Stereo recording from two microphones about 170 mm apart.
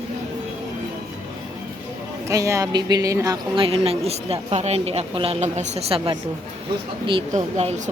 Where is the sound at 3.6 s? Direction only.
35° right (ahead or behind).